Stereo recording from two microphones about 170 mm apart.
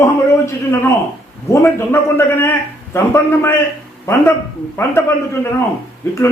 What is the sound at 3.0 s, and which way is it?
Speech, 15° left (ahead or behind).